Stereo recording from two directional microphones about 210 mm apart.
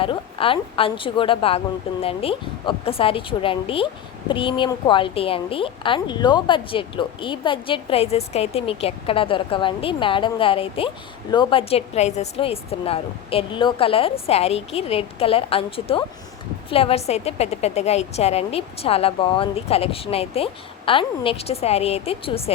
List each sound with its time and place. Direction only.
0.0 s a woman's voice: 25° left (ahead or behind)